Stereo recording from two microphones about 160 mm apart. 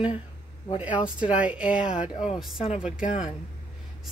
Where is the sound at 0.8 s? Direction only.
5° right (ahead or behind).